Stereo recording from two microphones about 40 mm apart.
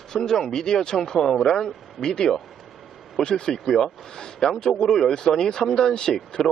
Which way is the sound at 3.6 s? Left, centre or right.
Centre.